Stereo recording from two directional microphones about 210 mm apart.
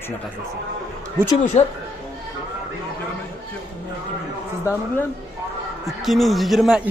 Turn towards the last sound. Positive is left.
turn(degrees=0)  # may be behind; listen again after turning